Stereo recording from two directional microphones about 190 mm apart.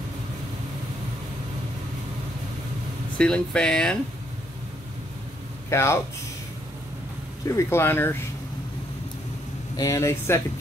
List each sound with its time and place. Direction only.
3.2 s speech: 5° left (ahead or behind)
5.7 s speech: 15° left (ahead or behind)
7.4 s speech: 15° left (ahead or behind)
9.8 s speech: 15° left (ahead or behind)